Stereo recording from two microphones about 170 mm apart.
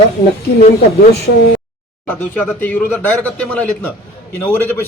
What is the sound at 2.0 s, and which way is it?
Speech, 10° left (ahead or behind).